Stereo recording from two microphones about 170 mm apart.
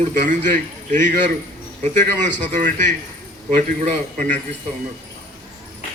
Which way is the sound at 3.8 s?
45° right (ahead or behind).